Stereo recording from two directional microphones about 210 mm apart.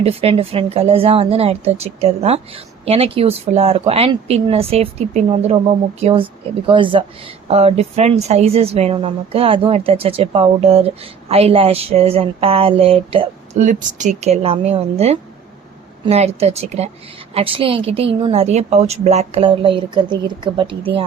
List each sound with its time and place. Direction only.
0.0 s a woman's voice: 30° right (ahead or behind)